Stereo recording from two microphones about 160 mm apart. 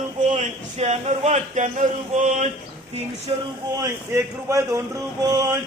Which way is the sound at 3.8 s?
20° right (ahead or behind).